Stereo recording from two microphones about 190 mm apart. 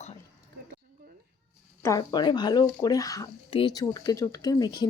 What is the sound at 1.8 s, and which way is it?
Speech, 20° left (ahead or behind).